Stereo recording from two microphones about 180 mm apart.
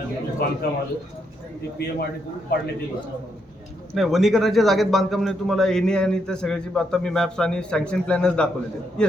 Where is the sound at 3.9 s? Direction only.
Centre (ahead or behind).